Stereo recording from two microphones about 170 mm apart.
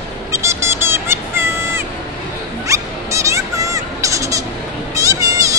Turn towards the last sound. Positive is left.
turn(degrees=-20)  # may be behind; listen again after turning